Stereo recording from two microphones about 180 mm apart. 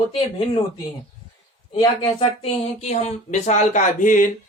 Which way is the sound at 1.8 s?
35° left (ahead or behind).